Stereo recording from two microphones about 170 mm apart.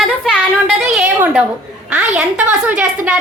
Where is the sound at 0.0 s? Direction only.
5° right (ahead or behind).